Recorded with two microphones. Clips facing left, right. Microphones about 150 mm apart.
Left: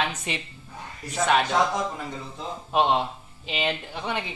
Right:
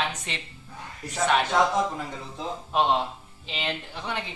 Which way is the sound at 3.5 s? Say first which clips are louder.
Left 4 dB; 15° left (ahead or behind).